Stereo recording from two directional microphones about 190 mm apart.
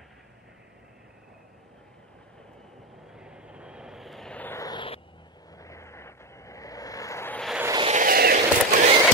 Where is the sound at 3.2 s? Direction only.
5° right (ahead or behind); by 4.9 s 25° left (ahead or behind).